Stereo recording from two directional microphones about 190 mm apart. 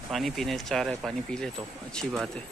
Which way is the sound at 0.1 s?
Centre (ahead or behind).